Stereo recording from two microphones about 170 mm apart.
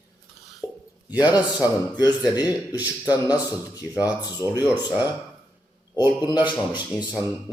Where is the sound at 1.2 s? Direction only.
25° left (ahead or behind).